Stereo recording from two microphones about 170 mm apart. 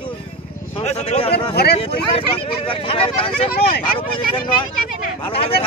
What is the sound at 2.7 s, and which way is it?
Speech, 35° left (ahead or behind).